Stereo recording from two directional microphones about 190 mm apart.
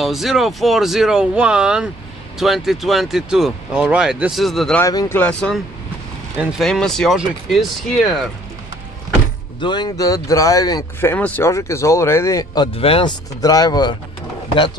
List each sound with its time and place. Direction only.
0.0 s speech: centre (ahead or behind)
4.8 s speech: 15° left (ahead or behind)
9.6 s speech: 25° left (ahead or behind)
12.7 s speech: 30° left (ahead or behind)